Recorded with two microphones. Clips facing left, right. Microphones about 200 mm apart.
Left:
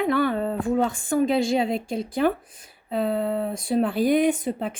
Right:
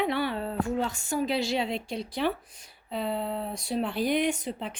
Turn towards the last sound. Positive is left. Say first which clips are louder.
# left 7 dB
turn(degrees=50)  # may be behind; listen again after turning